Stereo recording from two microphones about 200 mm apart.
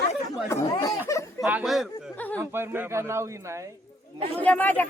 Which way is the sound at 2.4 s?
10° right (ahead or behind).